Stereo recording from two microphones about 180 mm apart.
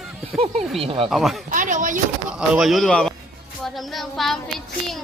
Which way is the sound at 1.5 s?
45° right (ahead or behind).